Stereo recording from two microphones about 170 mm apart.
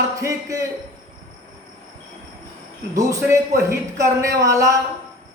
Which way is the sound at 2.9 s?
20° right (ahead or behind).